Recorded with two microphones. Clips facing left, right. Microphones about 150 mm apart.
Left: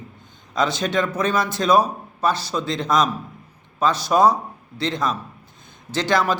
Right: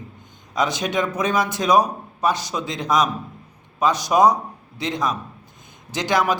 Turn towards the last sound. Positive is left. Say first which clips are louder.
# even
turn(degrees=-15)  # may be behind; listen again after turning